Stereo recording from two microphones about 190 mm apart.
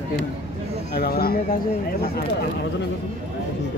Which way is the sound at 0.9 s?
55° left (ahead or behind).